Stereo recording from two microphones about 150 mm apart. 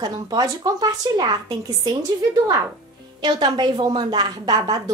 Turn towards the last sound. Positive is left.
turn(degrees=-25)  # may be behind; listen again after turning